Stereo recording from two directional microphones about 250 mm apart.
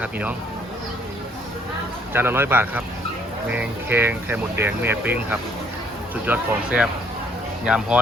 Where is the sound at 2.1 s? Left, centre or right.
Centre.